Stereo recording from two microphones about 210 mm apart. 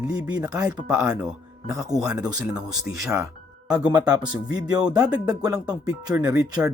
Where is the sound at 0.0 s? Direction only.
15° right (ahead or behind).